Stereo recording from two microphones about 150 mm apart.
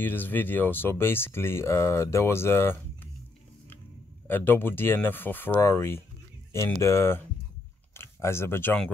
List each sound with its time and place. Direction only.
0.0 s speech: 15° left (ahead or behind)
4.3 s speech: 15° left (ahead or behind)